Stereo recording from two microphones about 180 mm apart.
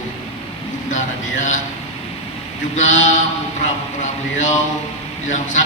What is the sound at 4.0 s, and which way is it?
A man's voice, 40° left (ahead or behind).